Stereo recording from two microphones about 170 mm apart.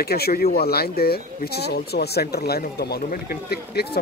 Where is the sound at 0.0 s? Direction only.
65° left (ahead or behind).